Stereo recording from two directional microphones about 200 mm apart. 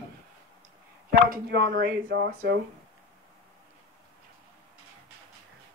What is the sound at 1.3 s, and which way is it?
Speech, 55° right (ahead or behind).